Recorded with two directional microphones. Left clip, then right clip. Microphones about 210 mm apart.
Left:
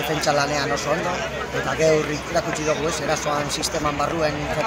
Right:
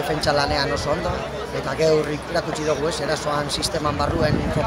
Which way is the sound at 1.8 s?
25° right (ahead or behind).